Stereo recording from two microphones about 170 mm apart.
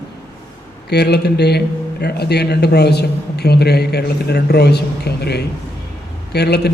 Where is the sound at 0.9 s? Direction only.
75° left (ahead or behind).